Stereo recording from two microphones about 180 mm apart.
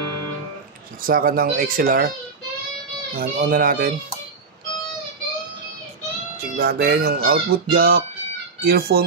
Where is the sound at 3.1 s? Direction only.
55° right (ahead or behind).